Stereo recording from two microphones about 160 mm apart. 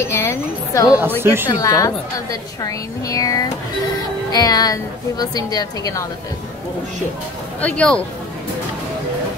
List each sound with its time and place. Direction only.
0.0 s a woman's voice: 15° left (ahead or behind)
1.2 s a woman's voice: 15° right (ahead or behind)
1.5 s a woman's voice: 20° left (ahead or behind)
7.6 s speech: 5° left (ahead or behind)